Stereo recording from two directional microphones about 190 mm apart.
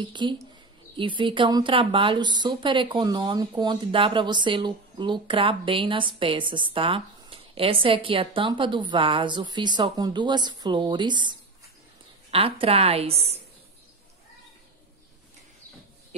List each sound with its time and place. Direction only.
0.1 s a woman's voice: 25° right (ahead or behind)